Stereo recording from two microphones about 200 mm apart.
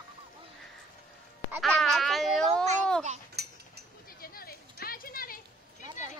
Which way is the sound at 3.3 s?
55° right (ahead or behind).